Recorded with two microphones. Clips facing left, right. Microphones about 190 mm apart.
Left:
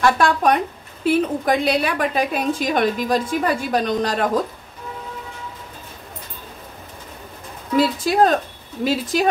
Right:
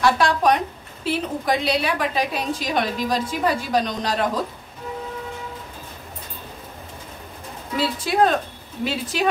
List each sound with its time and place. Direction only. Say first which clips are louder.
0.0 s a woman's voice: left 1 dB; 50° left (ahead or behind)
7.7 s a woman's voice: left 5 dB; 40° left (ahead or behind)